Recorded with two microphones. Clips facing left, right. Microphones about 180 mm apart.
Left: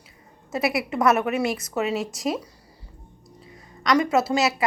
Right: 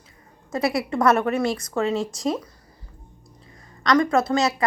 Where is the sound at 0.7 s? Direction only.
Centre (ahead or behind).